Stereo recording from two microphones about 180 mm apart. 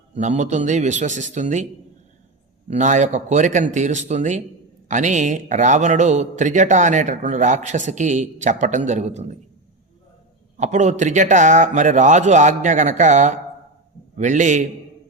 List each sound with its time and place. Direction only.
0.2 s speech: 40° right (ahead or behind)
2.6 s speech: 45° right (ahead or behind)
10.6 s speech: 40° right (ahead or behind)